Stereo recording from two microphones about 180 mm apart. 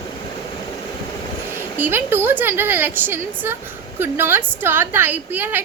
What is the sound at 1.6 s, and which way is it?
A woman's voice, 10° right (ahead or behind).